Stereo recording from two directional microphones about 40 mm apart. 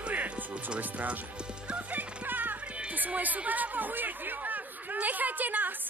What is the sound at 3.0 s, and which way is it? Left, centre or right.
Speech, right.